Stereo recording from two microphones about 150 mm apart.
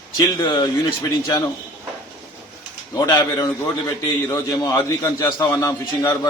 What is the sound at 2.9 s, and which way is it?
A man's voice, 25° left (ahead or behind).